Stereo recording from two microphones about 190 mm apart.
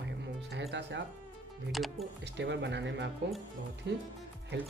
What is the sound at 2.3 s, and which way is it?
Speech, 65° right (ahead or behind).